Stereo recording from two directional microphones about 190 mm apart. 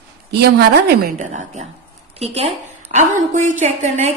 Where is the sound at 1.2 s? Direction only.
40° right (ahead or behind).